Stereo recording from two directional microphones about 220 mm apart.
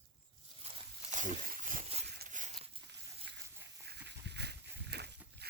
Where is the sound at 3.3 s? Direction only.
50° right (ahead or behind).